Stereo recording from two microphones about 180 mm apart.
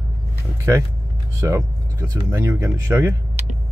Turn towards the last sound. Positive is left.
turn(degrees=-15)  # may be behind; listen again after turning